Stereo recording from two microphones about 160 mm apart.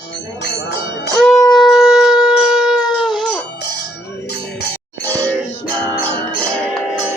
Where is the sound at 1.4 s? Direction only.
25° left (ahead or behind).